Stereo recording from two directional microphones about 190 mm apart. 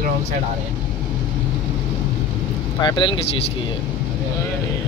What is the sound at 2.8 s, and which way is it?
Speech, 25° left (ahead or behind).